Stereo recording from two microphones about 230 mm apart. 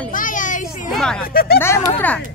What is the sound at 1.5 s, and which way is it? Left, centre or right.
Speech, centre.